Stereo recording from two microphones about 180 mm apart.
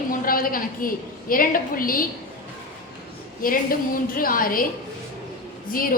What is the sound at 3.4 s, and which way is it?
A woman's voice, 50° left (ahead or behind).